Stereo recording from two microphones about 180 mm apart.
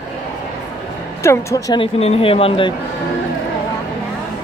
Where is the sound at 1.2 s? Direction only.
15° left (ahead or behind).